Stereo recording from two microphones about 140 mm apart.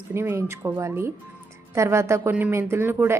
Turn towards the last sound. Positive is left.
turn(degrees=-15)  # may be behind; listen again after turning